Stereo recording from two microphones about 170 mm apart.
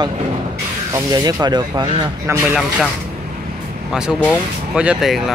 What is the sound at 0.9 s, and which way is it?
Speech, 25° right (ahead or behind).